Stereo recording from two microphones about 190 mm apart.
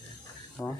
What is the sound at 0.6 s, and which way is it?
Speech, 5° left (ahead or behind).